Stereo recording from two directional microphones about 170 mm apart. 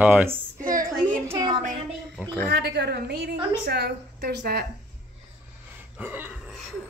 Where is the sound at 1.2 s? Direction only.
20° right (ahead or behind).